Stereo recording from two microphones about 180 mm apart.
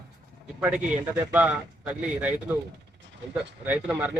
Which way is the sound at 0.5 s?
5° right (ahead or behind).